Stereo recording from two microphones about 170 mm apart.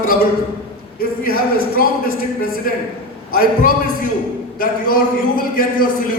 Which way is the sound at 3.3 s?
60° left (ahead or behind).